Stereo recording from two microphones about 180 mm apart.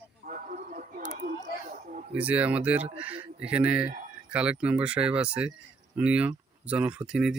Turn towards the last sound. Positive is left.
turn(degrees=-5)  # may be behind; listen again after turning